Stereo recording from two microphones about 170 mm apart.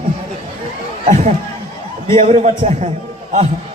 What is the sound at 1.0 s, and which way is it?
A man's voice, 40° right (ahead or behind).